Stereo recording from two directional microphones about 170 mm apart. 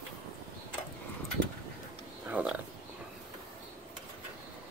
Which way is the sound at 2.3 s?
10° right (ahead or behind).